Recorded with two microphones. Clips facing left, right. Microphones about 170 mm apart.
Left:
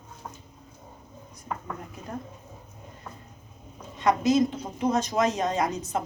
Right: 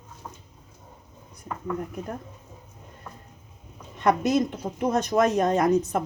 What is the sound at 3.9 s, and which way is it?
Speech, 60° right (ahead or behind).